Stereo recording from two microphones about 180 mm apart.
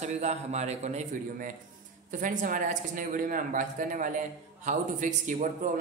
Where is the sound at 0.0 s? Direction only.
35° right (ahead or behind).